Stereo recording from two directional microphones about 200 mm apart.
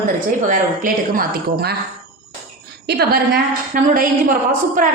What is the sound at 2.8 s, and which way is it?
Speech, 55° right (ahead or behind).